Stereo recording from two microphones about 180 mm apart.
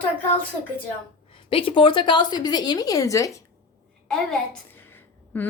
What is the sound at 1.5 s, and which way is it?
A woman's voice, 30° left (ahead or behind).